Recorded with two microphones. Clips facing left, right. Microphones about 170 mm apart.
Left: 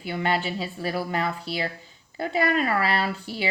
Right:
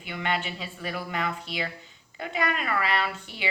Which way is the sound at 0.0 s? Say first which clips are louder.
Left 4 dB; 35° left (ahead or behind).